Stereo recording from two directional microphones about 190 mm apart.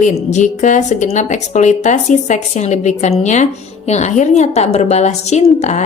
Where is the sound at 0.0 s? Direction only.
40° left (ahead or behind).